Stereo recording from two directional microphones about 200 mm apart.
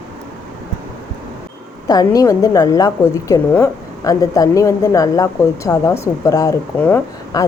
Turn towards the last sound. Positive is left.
turn(degrees=10)  # may be behind; listen again after turning